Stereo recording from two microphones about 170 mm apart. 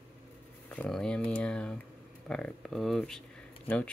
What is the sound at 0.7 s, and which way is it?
Speech, 5° left (ahead or behind).